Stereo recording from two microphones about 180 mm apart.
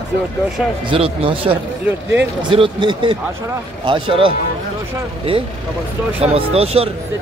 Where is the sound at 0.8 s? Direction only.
30° right (ahead or behind).